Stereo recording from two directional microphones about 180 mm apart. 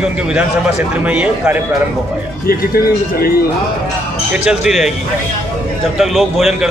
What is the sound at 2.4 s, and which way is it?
Speech, 55° left (ahead or behind).